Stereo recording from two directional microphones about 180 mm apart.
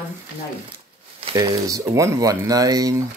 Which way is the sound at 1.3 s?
20° right (ahead or behind).